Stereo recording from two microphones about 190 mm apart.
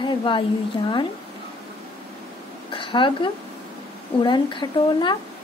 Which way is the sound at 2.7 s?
25° left (ahead or behind).